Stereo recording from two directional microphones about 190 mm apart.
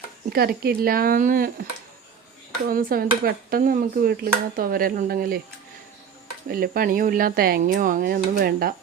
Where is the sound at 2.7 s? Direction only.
50° right (ahead or behind).